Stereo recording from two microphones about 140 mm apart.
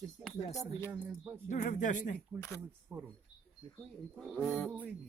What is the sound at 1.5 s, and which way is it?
Speech, 65° left (ahead or behind).